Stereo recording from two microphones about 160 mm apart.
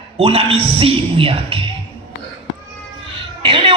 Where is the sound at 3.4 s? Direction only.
35° right (ahead or behind).